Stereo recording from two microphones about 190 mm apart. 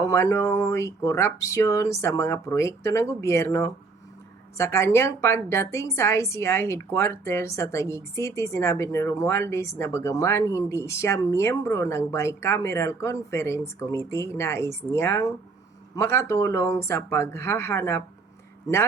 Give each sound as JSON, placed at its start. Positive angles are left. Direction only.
{"t": 0.0, "sound": "a woman's voice", "side_deg": 15}